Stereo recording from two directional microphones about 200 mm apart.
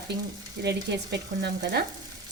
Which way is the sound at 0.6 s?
55° right (ahead or behind).